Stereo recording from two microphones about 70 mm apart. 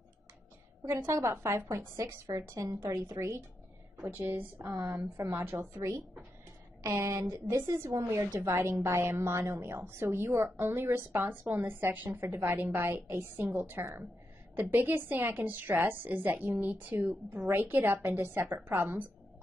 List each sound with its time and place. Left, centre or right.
0.8 s a woman's voice: right
4.3 s a woman's voice: right
5.6 s a woman's voice: right